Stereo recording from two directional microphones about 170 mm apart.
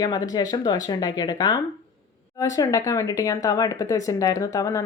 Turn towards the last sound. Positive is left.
turn(degrees=20)  # may be behind; listen again after turning